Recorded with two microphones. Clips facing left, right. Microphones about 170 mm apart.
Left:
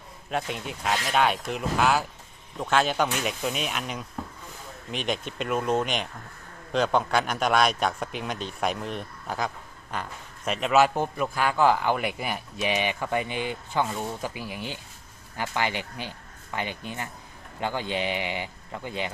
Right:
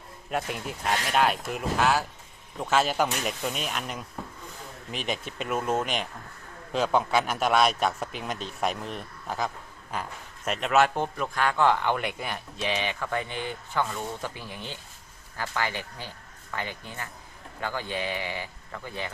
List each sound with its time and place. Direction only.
0.3 s a man's voice: 5° right (ahead or behind); by 19.1 s 20° left (ahead or behind)